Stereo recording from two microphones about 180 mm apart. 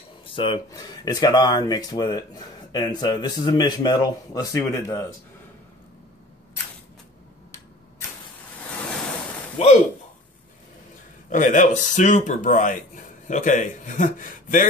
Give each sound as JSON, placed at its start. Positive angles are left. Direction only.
{"t": 0.3, "sound": "speech", "side_deg": 25}
{"t": 11.2, "sound": "speech", "side_deg": 45}